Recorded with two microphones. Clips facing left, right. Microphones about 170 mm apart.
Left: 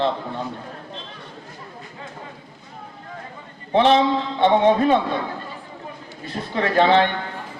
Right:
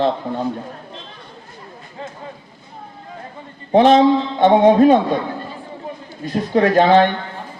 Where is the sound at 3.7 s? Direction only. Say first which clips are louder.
Right 5 dB; 45° right (ahead or behind).